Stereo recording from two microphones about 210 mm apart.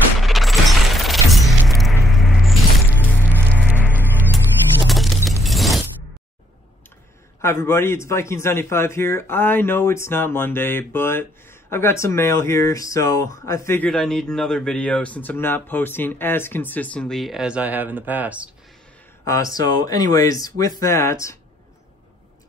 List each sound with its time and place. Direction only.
0.2 s music: centre (ahead or behind)
4.8 s shatter: centre (ahead or behind)
7.4 s speech: 10° left (ahead or behind); by 18.5 s 5° right (ahead or behind)
19.2 s speech: 15° left (ahead or behind)